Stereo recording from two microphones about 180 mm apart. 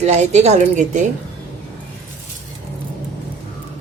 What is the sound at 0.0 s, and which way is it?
A woman's voice, 40° right (ahead or behind).